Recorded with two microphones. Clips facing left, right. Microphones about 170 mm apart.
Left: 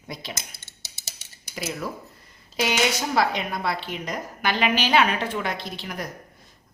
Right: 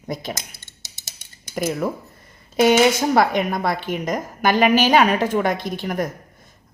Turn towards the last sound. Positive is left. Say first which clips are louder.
# right 9 dB
turn(degrees=-50)  # may be behind; listen again after turning